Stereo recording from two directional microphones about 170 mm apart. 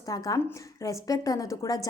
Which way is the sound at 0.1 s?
20° left (ahead or behind).